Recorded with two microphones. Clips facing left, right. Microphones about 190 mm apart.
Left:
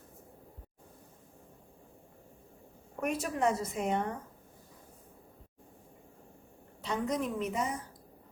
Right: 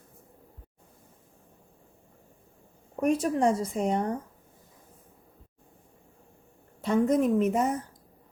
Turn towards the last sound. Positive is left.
turn(degrees=-50)  # may be behind; listen again after turning